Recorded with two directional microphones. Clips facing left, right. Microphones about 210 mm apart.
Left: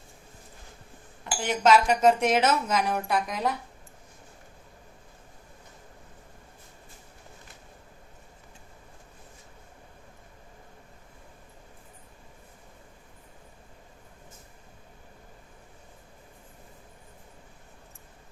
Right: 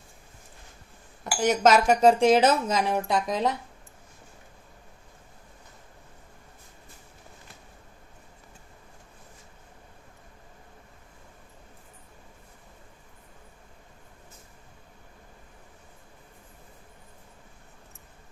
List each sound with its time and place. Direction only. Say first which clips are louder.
1.2 s speech: right 4 dB; 45° right (ahead or behind); by 3.5 s 25° right (ahead or behind)